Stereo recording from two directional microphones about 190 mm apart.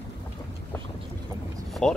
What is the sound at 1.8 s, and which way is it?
Speech, 5° left (ahead or behind).